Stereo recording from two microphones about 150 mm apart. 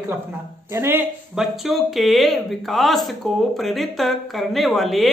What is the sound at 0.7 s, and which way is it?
Speech, 15° right (ahead or behind).